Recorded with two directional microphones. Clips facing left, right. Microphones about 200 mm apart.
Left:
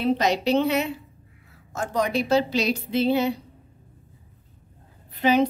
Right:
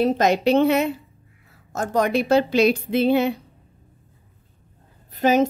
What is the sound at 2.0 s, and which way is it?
Speech, 55° right (ahead or behind).